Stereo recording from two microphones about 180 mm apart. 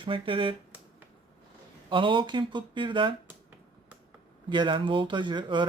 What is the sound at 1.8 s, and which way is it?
Speech, 25° right (ahead or behind).